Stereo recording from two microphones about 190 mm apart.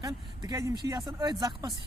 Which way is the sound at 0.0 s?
20° right (ahead or behind).